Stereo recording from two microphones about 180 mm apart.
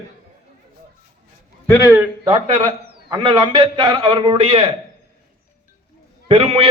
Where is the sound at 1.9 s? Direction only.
20° right (ahead or behind).